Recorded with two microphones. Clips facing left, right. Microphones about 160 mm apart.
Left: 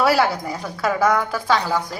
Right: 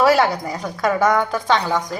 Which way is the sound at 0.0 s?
Centre (ahead or behind).